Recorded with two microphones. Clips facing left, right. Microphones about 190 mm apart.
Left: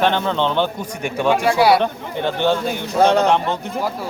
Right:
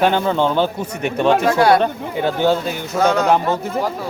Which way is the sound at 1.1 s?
5° left (ahead or behind).